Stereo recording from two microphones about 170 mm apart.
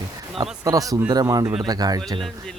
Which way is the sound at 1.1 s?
20° right (ahead or behind).